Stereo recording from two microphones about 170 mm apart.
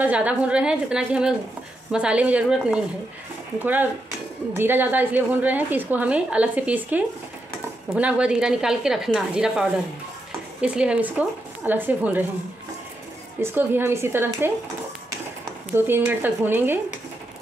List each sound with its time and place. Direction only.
0.0 s a woman's voice: 10° right (ahead or behind)
13.4 s a woman's voice: 15° right (ahead or behind)
15.7 s a woman's voice: 10° right (ahead or behind)